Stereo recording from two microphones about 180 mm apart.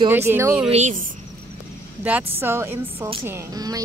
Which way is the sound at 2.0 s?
10° right (ahead or behind).